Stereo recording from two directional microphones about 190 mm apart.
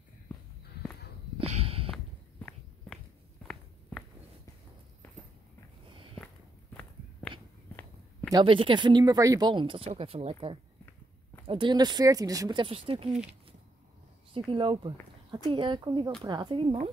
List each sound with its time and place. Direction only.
1.4 s a sound: 30° right (ahead or behind)
5.0 s clip-clop: 10° left (ahead or behind)
6.8 s walk: 10° left (ahead or behind)
8.3 s speech: 25° right (ahead or behind)
13.1 s speech: 5° right (ahead or behind)
14.5 s speech: 25° right (ahead or behind)